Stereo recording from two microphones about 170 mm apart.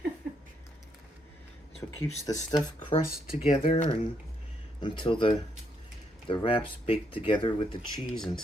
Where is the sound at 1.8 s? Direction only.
15° left (ahead or behind).